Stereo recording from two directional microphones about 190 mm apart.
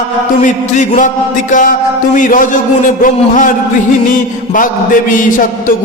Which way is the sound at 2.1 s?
45° left (ahead or behind).